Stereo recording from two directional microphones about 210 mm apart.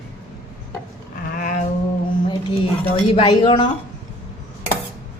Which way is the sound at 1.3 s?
35° left (ahead or behind).